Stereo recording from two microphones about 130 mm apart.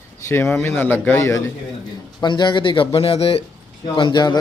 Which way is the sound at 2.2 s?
35° left (ahead or behind).